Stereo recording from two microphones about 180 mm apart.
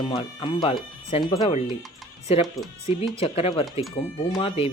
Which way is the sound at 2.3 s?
35° left (ahead or behind).